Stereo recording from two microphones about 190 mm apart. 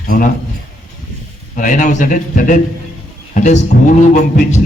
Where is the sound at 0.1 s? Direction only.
45° left (ahead or behind).